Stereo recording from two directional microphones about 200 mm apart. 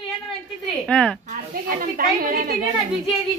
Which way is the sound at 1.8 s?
45° right (ahead or behind).